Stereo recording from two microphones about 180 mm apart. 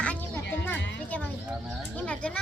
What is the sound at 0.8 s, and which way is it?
Speech, 80° left.